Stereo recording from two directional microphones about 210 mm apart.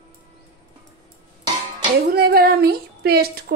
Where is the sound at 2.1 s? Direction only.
45° right (ahead or behind).